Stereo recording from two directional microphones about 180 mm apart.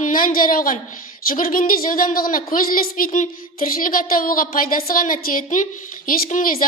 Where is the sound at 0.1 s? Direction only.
50° left (ahead or behind).